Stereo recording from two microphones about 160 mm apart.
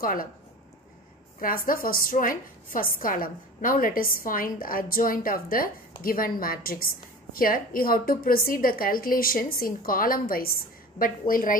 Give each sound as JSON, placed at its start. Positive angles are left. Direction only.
{"t": 0.0, "sound": "a woman's voice", "side_deg": 65}
{"t": 1.4, "sound": "a woman's voice", "side_deg": 60}